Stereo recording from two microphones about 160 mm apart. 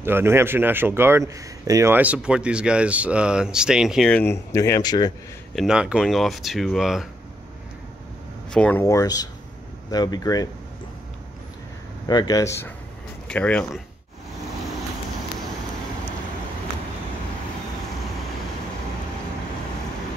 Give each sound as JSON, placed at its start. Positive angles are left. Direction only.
{"t": 0.0, "sound": "speech", "side_deg": -15}
{"t": 4.1, "sound": "speech", "side_deg": 15}
{"t": 5.6, "sound": "speech", "side_deg": -5}
{"t": 8.5, "sound": "speech", "side_deg": 5}
{"t": 8.8, "sound": "speech", "side_deg": 20}
{"t": 12.1, "sound": "speech", "side_deg": 25}